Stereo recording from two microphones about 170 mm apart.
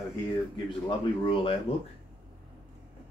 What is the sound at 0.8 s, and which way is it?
Speech, 30° left (ahead or behind).